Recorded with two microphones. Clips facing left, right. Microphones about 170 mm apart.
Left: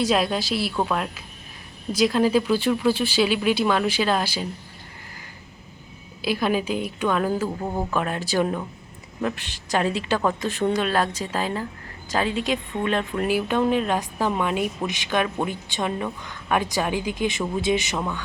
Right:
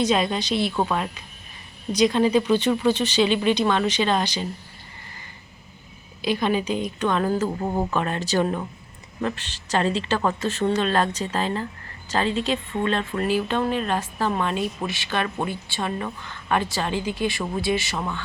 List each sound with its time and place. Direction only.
0.0 s speech: 5° left (ahead or behind)
6.2 s speech: 5° left (ahead or behind)